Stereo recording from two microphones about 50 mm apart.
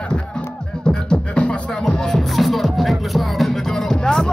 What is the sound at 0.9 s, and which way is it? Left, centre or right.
Beatboxing, centre.